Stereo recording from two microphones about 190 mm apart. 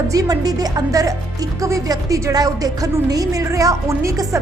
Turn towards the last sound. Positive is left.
turn(degrees=-15)  # may be behind; listen again after turning